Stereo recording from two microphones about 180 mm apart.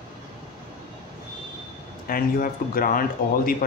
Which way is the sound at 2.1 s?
50° left (ahead or behind).